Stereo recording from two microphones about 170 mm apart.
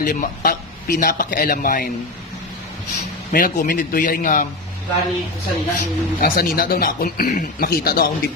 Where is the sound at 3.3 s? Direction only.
55° left (ahead or behind).